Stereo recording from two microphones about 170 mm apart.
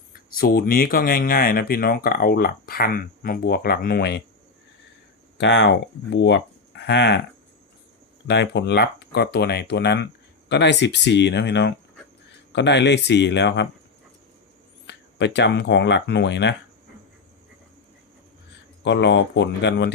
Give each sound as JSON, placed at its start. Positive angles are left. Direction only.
{"t": 0.3, "sound": "speech", "side_deg": 60}
{"t": 5.4, "sound": "speech", "side_deg": 90}
{"t": 8.3, "sound": "speech", "side_deg": 90}
{"t": 14.8, "sound": "speech", "side_deg": 90}
{"t": 18.8, "sound": "speech", "side_deg": 90}